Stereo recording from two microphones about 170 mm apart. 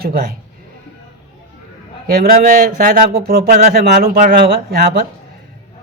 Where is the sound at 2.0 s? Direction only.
60° right (ahead or behind).